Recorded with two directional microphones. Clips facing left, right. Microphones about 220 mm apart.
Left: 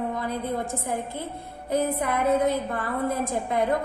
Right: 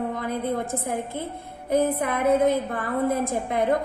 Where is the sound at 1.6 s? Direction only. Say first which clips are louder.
Right 3 dB; 50° right (ahead or behind).